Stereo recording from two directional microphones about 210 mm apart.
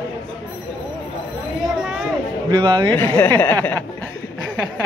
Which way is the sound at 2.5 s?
20° right (ahead or behind).